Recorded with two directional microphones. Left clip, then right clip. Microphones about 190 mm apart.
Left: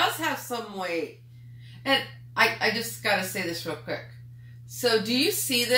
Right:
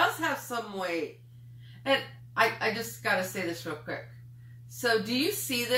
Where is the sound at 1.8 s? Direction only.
15° left (ahead or behind).